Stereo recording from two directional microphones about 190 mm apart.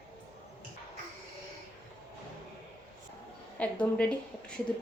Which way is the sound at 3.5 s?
5° left (ahead or behind).